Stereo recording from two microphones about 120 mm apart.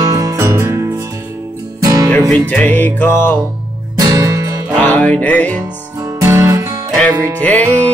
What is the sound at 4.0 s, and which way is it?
Music, 30° right (ahead or behind).